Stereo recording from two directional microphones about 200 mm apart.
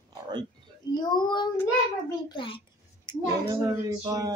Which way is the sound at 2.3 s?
25° left (ahead or behind).